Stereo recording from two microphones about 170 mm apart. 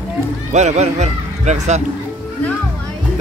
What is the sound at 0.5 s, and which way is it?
Speech, 40° right (ahead or behind).